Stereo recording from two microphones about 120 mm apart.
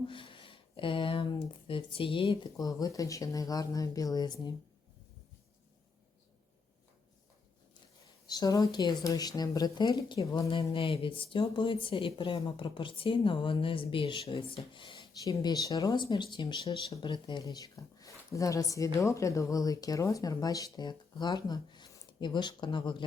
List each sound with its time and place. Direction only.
0.1 s speech: 45° left (ahead or behind)
8.3 s speech: 30° left (ahead or behind)
10.6 s speech: 50° left (ahead or behind)
15.2 s a woman's voice: 30° left (ahead or behind)